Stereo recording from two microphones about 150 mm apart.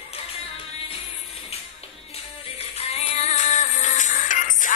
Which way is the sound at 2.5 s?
45° left (ahead or behind).